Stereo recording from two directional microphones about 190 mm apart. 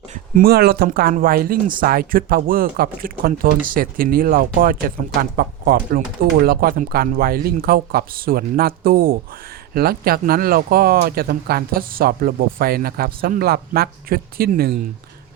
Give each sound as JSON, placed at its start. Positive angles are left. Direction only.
{"t": 0.1, "sound": "speech", "side_deg": -50}